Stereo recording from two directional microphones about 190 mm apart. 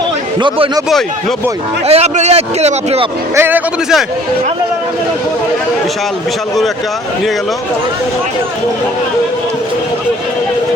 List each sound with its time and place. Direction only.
0.3 s speech: 25° right (ahead or behind)
1.9 s a man's voice: 35° right (ahead or behind)
3.3 s a man's voice: 10° right (ahead or behind)